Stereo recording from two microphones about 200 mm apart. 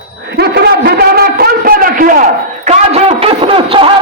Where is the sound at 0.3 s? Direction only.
50° right (ahead or behind).